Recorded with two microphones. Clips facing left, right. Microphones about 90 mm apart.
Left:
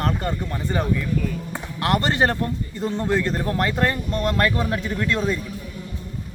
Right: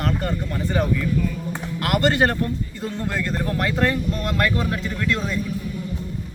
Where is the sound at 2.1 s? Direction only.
25° left (ahead or behind).